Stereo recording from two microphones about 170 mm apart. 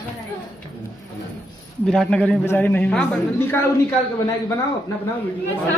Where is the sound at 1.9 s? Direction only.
5° left (ahead or behind).